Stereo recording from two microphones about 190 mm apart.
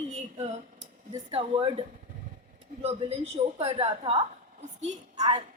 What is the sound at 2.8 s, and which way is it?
A woman's voice, 30° right (ahead or behind).